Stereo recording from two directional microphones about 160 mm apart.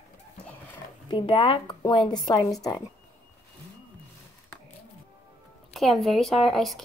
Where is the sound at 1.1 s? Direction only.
30° left (ahead or behind).